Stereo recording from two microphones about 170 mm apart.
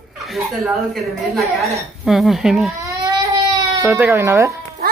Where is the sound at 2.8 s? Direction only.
20° right (ahead or behind).